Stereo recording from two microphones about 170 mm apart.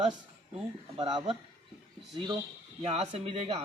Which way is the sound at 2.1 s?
25° right (ahead or behind).